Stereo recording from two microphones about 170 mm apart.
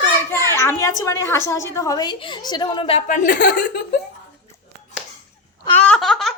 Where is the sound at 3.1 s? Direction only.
50° left (ahead or behind).